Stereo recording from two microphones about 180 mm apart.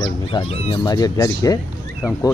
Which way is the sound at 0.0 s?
30° left (ahead or behind).